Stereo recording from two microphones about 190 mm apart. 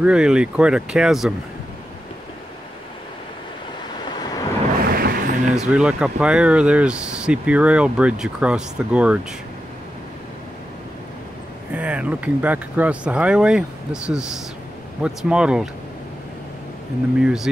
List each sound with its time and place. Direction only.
0.0 s speech: 5° right (ahead or behind)
4.0 s vehicle: 20° left (ahead or behind)
4.8 s a sound: 50° right (ahead or behind)
5.7 s speech: 5° right (ahead or behind)
11.7 s speech: 5° right (ahead or behind)
17.2 s speech: 5° right (ahead or behind)